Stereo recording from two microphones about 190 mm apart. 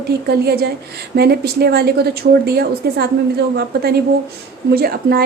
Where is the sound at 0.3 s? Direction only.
55° right (ahead or behind).